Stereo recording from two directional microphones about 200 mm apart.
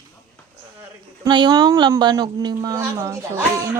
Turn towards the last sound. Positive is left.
turn(degrees=-15)  # may be behind; listen again after turning